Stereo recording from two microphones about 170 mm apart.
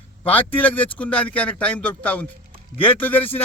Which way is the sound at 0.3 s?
10° left (ahead or behind).